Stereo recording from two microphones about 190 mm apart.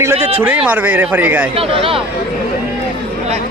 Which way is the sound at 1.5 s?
30° right (ahead or behind).